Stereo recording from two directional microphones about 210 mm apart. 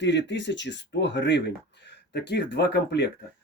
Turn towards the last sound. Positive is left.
turn(degrees=55)  # may be behind; listen again after turning